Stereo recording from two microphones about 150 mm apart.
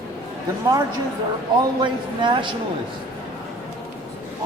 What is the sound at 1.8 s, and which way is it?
Speech, 30° right (ahead or behind).